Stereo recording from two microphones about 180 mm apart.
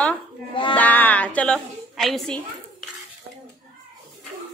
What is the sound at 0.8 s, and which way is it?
A woman's voice, 10° left (ahead or behind).